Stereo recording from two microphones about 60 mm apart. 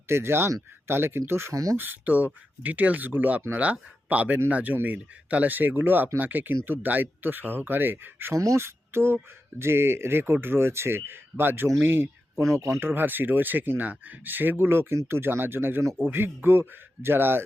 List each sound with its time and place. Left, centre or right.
0.1 s speech: right
1.7 s speech: right
8.3 s speech: right
8.6 s speech: right
12.5 s speech: right
12.8 s speech: right